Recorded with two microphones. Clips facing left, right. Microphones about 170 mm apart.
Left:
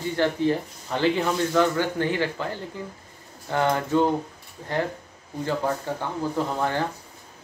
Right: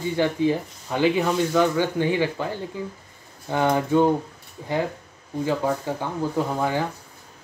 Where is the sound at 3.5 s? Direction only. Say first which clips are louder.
Right 2 dB; 15° right (ahead or behind).